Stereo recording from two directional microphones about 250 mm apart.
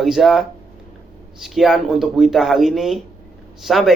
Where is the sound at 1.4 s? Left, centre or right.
Centre.